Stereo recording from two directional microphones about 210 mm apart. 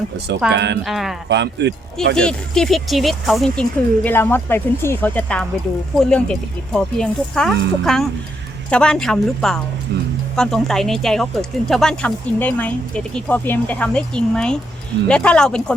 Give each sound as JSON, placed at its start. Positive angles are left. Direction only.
{"t": 0.5, "sound": "speech", "side_deg": -55}
{"t": 0.9, "sound": "speech", "side_deg": 0}
{"t": 1.3, "sound": "speech", "side_deg": -55}
{"t": 2.1, "sound": "speech", "side_deg": 5}
{"t": 9.9, "sound": "speech", "side_deg": -55}
{"t": 10.3, "sound": "speech", "side_deg": 0}